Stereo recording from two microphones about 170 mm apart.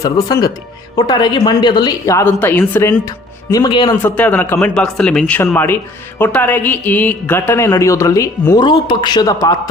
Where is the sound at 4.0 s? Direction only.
10° left (ahead or behind).